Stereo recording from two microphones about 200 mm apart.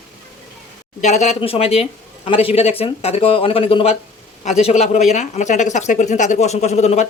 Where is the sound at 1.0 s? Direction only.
35° left (ahead or behind).